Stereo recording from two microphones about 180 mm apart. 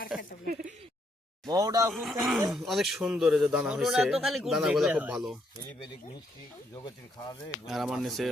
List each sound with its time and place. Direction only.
0.1 s a sound: 5° right (ahead or behind)
1.5 s speech: 20° right (ahead or behind)
1.9 s a man's voice: centre (ahead or behind)
5.6 s a sound: 20° left (ahead or behind)
6.7 s speech: 20° left (ahead or behind)
7.7 s a man's voice: centre (ahead or behind)